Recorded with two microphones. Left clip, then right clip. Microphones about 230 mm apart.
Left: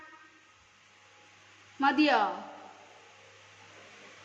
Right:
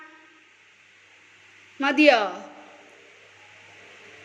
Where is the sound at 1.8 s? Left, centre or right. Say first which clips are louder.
Right 7 dB; left.